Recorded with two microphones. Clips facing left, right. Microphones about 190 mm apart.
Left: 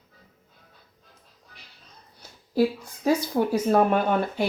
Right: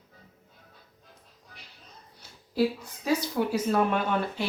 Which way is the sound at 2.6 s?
45° left (ahead or behind).